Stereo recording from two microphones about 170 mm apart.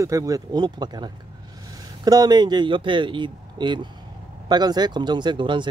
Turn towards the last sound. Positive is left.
turn(degrees=-30)  # may be behind; listen again after turning